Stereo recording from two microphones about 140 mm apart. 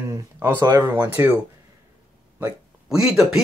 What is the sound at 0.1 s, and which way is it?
Speech, 20° right (ahead or behind).